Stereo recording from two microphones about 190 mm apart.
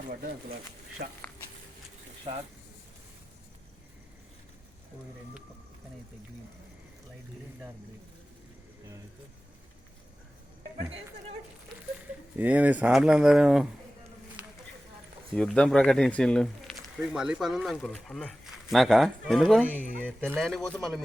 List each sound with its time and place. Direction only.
0.1 s speech: 50° right (ahead or behind)
1.0 s speech: 35° right (ahead or behind)
12.4 s speech: 10° right (ahead or behind)
15.4 s speech: 5° left (ahead or behind)